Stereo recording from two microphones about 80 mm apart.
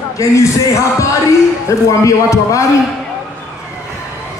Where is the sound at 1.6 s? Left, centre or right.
Left.